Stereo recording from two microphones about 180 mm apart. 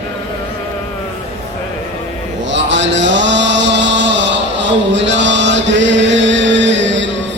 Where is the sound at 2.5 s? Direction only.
85° right.